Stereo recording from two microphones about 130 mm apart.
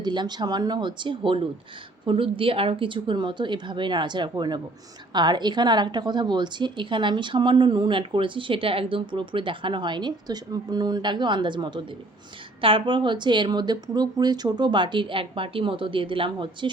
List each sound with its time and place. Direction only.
0.0 s a woman's voice: 35° right (ahead or behind)